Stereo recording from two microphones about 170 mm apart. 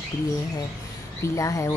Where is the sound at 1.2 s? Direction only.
20° left (ahead or behind).